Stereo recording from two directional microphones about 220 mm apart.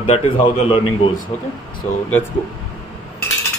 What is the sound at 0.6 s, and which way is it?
Speech, 25° left (ahead or behind).